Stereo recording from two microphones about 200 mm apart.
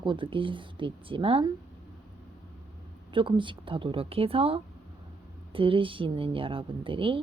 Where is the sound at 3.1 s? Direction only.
25° right (ahead or behind).